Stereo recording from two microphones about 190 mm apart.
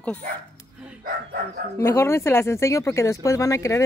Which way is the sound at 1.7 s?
15° left (ahead or behind).